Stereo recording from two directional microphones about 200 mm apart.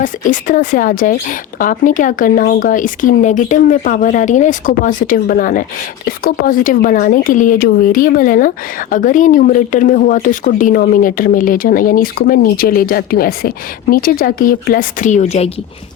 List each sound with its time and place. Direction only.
0.0 s speech: 40° left (ahead or behind)